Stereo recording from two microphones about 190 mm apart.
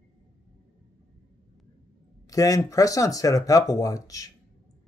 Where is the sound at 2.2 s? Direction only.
20° left (ahead or behind).